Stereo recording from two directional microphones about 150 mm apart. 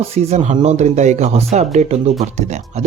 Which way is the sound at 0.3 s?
45° right (ahead or behind).